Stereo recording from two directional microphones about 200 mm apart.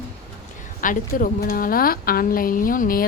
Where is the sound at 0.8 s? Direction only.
40° left (ahead or behind).